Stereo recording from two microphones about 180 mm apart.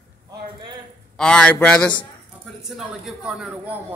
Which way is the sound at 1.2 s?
5° left (ahead or behind).